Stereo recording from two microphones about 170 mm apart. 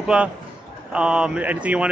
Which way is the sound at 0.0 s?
5° right (ahead or behind).